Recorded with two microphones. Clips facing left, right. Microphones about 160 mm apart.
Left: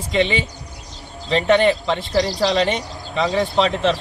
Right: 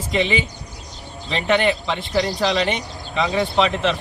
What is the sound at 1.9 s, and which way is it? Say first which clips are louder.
Speech: left 2 dB; 35° left (ahead or behind).